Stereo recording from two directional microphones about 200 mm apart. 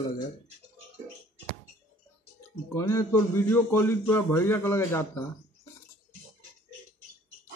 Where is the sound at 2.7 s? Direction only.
15° left (ahead or behind).